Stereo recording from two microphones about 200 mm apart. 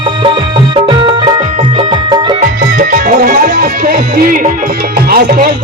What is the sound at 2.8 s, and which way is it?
Music, 45° right (ahead or behind).